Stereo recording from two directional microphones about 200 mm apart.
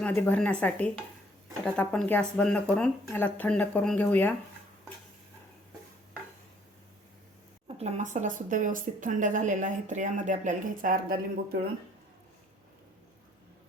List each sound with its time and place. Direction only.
0.0 s speech: 10° left (ahead or behind)
7.8 s speech: 35° right (ahead or behind)